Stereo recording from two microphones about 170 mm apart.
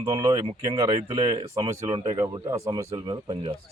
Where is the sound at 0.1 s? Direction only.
30° right (ahead or behind).